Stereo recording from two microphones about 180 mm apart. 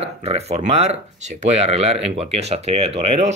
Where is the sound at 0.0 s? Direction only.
35° right (ahead or behind).